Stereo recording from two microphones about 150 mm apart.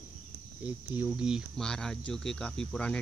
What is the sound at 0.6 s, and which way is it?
Speech, 10° right (ahead or behind).